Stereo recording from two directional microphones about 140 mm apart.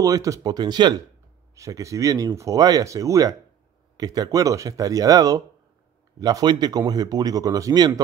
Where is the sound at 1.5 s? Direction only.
20° right (ahead or behind).